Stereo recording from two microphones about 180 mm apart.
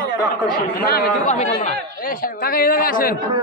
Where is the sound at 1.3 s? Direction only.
40° left (ahead or behind).